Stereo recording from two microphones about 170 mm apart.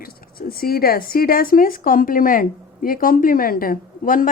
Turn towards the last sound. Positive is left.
turn(degrees=55)  # may be behind; listen again after turning